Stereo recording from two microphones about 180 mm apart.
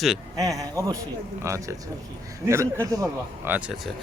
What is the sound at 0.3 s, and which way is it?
A man's voice, 20° right (ahead or behind).